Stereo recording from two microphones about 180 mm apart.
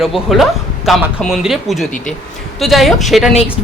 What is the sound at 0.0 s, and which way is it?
Speech, centre (ahead or behind).